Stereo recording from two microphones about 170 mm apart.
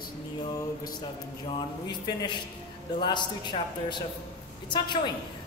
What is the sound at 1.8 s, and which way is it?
A man's voice, 25° left (ahead or behind).